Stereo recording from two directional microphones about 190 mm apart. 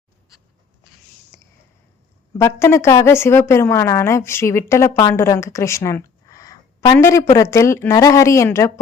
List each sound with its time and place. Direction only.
2.4 s a woman's voice: 15° left (ahead or behind)